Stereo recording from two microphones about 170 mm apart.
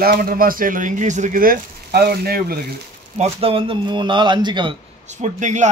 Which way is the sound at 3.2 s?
35° right (ahead or behind).